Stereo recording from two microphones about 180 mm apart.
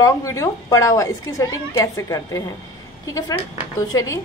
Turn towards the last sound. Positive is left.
turn(degrees=20)  # may be behind; listen again after turning